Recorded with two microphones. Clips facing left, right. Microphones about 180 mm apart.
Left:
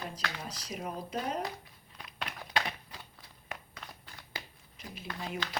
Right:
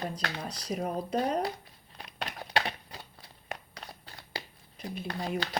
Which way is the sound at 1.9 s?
35° right (ahead or behind).